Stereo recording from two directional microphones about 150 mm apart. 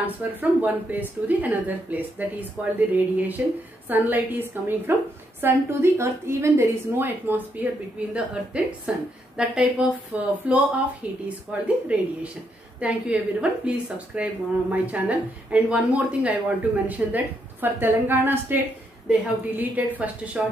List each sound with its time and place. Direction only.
0.0 s a woman's voice: 10° right (ahead or behind)